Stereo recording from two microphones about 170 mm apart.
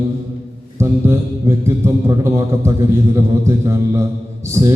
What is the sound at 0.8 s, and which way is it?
A man's voice, 15° right (ahead or behind).